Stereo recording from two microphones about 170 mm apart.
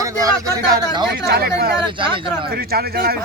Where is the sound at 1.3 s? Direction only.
70° right (ahead or behind).